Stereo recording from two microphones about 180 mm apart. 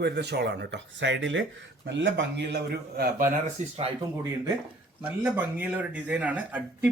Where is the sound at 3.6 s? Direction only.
40° right (ahead or behind).